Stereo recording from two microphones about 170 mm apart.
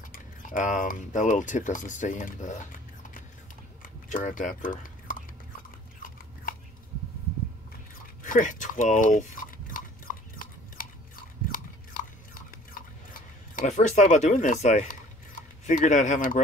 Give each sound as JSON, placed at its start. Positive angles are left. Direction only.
{"t": 0.1, "sound": "speech", "side_deg": 50}
{"t": 4.1, "sound": "speech", "side_deg": 50}
{"t": 8.2, "sound": "speech", "side_deg": 50}
{"t": 10.1, "sound": "a sound", "side_deg": 55}
{"t": 10.8, "sound": "chewing", "side_deg": 55}
{"t": 13.6, "sound": "speech", "side_deg": 45}